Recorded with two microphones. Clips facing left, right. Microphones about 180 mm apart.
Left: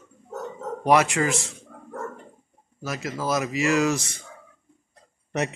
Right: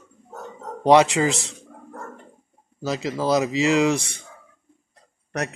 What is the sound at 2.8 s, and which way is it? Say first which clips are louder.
Speech: right 5 dB; 20° right (ahead or behind).